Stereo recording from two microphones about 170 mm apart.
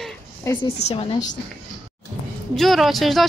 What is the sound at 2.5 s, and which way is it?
Speech, centre (ahead or behind).